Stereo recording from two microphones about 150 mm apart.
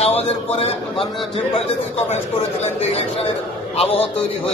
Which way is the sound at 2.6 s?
45° left (ahead or behind).